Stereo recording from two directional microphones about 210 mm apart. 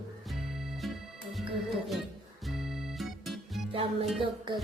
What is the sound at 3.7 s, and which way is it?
Music, 25° right (ahead or behind).